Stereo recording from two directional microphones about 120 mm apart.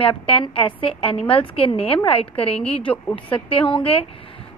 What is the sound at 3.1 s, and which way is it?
Speech, 50° left (ahead or behind).